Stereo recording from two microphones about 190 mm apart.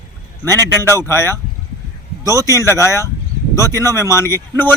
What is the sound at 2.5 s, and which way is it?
Speech, 15° left (ahead or behind).